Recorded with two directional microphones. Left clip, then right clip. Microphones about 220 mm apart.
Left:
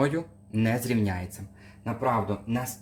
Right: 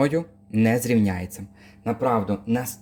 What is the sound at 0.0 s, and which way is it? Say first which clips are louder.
Speech: right 5 dB; 25° right (ahead or behind).